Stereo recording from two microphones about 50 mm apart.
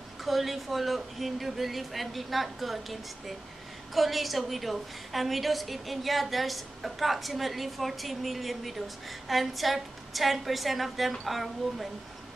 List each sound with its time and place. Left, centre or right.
0.2 s a woman's voice: centre